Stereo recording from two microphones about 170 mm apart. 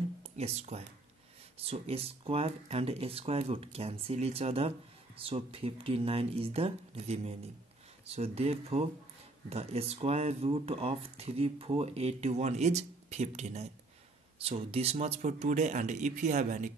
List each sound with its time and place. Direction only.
0.2 s speech: 40° right (ahead or behind)